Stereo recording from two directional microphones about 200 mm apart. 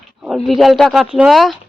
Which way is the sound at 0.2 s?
Centre (ahead or behind).